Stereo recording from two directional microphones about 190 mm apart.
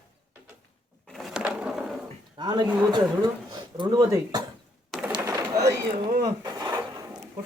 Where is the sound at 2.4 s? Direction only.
20° right (ahead or behind).